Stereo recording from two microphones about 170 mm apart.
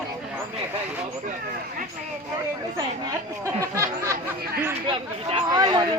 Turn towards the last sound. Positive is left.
turn(degrees=-25)  # may be behind; listen again after turning